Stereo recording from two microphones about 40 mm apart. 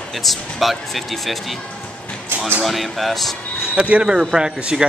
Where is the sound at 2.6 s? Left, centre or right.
Centre.